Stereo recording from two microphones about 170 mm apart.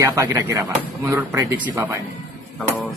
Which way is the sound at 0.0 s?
20° right (ahead or behind).